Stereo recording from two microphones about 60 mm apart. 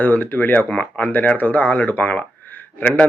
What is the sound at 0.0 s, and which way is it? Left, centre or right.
A man's voice, left.